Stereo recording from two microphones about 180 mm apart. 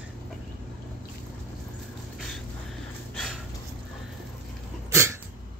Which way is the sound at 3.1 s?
Centre (ahead or behind).